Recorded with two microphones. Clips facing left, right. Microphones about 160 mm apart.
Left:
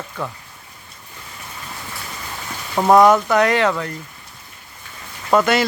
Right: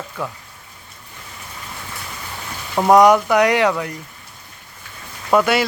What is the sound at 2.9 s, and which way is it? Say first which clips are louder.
Speech: right 1 dB; 15° right (ahead or behind).